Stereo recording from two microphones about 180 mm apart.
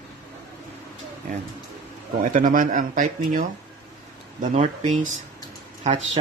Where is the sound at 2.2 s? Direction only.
45° right (ahead or behind).